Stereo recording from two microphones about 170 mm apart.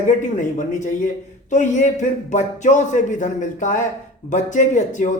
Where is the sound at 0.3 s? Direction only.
50° left (ahead or behind).